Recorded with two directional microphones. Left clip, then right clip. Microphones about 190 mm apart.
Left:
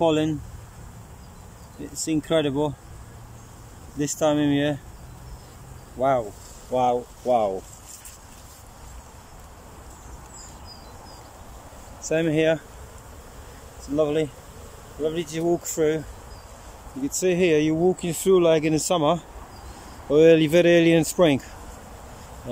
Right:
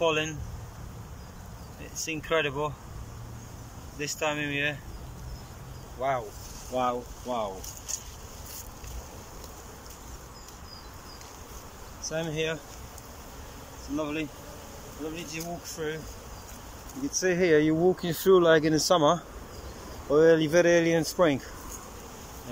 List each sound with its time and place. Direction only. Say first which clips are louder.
0.0 s speech: left 5 dB; 30° left (ahead or behind)
2.0 s speech: left 5 dB; 30° left (ahead or behind)
4.0 s speech: left 8 dB; 30° left (ahead or behind)
5.9 s speech: left 7 dB; 30° left (ahead or behind)
12.1 s speech: left 10 dB; 35° left (ahead or behind)
13.9 s speech: left 10 dB; 30° left (ahead or behind)
17.2 s speech: left 3 dB; 15° left (ahead or behind)